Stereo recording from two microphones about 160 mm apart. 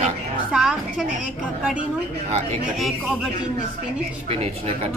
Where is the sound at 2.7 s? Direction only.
Centre (ahead or behind).